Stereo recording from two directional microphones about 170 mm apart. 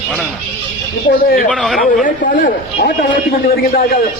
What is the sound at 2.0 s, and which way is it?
Speech, 50° left (ahead or behind).